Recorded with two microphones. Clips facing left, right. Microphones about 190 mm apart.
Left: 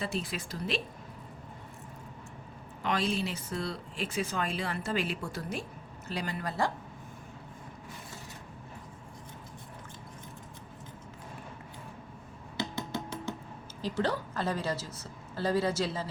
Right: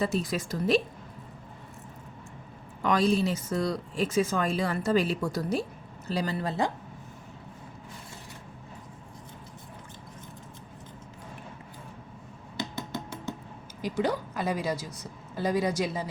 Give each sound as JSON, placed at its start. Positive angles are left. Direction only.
{"t": 0.0, "sound": "speech", "side_deg": -40}
{"t": 2.8, "sound": "speech", "side_deg": -40}
{"t": 12.7, "sound": "music", "side_deg": 15}
{"t": 13.8, "sound": "a woman's voice", "side_deg": -15}